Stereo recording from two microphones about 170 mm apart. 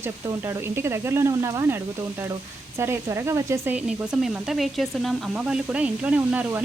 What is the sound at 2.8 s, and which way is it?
Speech, 15° right (ahead or behind).